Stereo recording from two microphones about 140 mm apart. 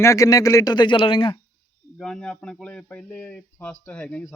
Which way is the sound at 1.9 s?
5° left (ahead or behind).